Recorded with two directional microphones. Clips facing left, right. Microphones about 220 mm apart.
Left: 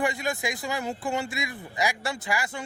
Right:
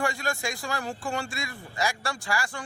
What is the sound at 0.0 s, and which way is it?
Speech, 20° left (ahead or behind).